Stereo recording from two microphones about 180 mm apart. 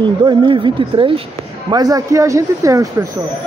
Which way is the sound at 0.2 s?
25° right (ahead or behind).